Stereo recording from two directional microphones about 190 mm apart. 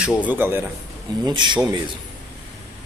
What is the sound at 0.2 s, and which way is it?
Speech, 10° right (ahead or behind).